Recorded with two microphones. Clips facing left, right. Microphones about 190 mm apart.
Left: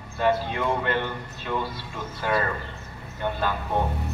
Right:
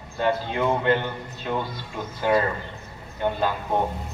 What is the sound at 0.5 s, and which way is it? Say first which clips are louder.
Speech: right 4 dB; 20° right (ahead or behind).